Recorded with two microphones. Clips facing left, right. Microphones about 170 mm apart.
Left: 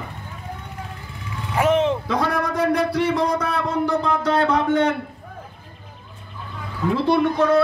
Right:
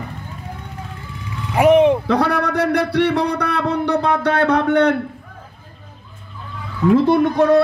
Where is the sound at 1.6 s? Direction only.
15° right (ahead or behind).